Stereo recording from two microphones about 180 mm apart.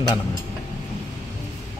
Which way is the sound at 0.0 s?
20° left (ahead or behind).